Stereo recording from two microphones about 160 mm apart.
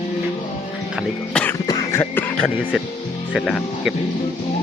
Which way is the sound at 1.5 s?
20° left (ahead or behind).